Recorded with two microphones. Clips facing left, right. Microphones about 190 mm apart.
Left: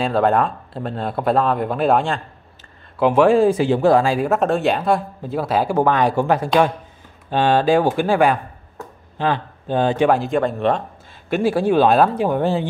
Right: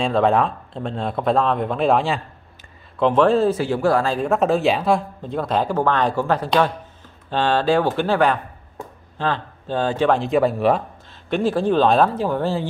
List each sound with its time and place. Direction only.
0.0 s speech: centre (ahead or behind)
3.0 s speech: 10° left (ahead or behind)
10.1 s speech: centre (ahead or behind)
11.2 s speech: 10° left (ahead or behind)